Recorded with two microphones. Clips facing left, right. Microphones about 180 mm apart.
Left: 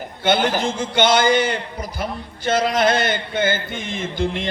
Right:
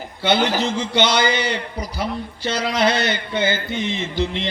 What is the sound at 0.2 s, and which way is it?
A man's voice, 50° left (ahead or behind).